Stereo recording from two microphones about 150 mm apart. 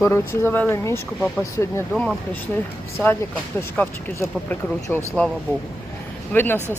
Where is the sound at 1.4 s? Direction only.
20° left (ahead or behind).